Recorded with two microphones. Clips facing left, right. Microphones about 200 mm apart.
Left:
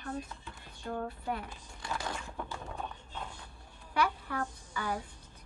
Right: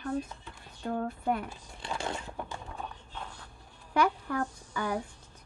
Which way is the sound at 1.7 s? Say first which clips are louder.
Right 3 dB; 25° right (ahead or behind).